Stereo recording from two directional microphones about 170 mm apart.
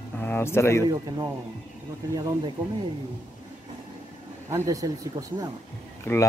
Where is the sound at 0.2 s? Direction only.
15° left (ahead or behind).